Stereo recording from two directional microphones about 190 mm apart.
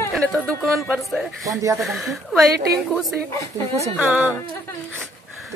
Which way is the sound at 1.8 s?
Centre (ahead or behind).